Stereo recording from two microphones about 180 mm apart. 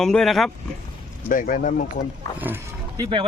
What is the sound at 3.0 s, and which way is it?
Speech, 25° right (ahead or behind).